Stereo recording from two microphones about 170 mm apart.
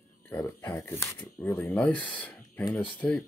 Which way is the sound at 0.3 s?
15° left (ahead or behind).